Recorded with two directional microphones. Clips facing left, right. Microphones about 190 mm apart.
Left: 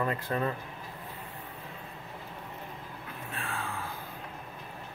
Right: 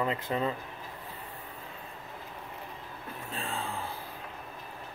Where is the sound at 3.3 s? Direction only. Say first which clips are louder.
Right 1 dB; 30° right (ahead or behind).